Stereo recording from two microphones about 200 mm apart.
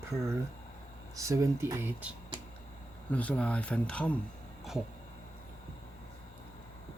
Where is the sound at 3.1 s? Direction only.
5° left (ahead or behind).